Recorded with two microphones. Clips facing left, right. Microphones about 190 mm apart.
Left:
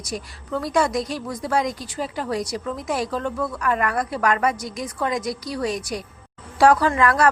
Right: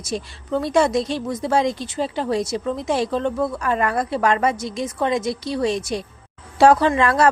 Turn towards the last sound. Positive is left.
turn(degrees=-25)  # may be behind; listen again after turning